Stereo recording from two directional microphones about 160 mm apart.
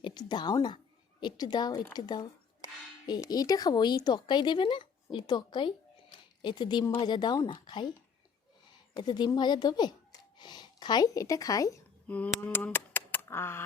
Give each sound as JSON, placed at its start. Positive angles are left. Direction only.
{"t": 0.0, "sound": "speech", "side_deg": 25}
{"t": 9.0, "sound": "speech", "side_deg": 25}
{"t": 12.0, "sound": "speech", "side_deg": 10}